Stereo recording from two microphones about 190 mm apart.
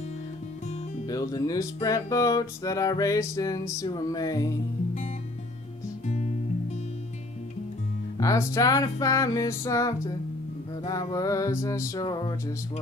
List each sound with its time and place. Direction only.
1.0 s music: 20° left (ahead or behind)
8.2 s music: 15° left (ahead or behind)